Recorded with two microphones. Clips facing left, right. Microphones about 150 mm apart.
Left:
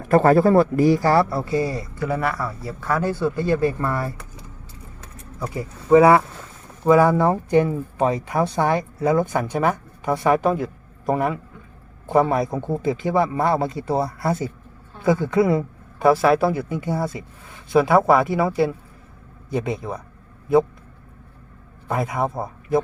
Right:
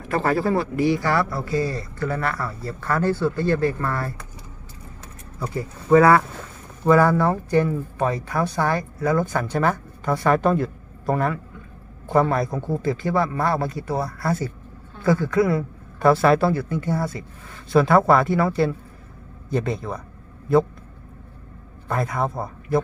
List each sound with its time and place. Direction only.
0.1 s speech: 45° left (ahead or behind); by 4.1 s 15° left (ahead or behind)
5.5 s a man's voice: 15° left (ahead or behind)
16.0 s speech: 5° left (ahead or behind)
21.8 s speech: 10° left (ahead or behind)